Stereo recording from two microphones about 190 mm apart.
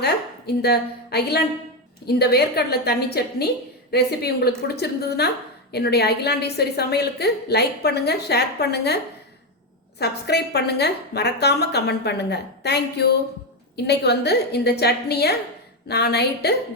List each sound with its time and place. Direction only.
0.0 s a woman's voice: 60° left (ahead or behind)
10.0 s a woman's voice: 60° left (ahead or behind)